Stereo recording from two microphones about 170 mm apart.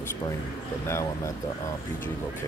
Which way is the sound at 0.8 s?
15° left (ahead or behind).